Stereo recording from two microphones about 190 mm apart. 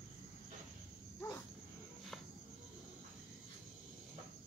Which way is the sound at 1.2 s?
15° left (ahead or behind).